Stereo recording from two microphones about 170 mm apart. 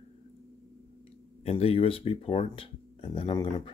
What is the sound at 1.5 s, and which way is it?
Speech, 35° left (ahead or behind).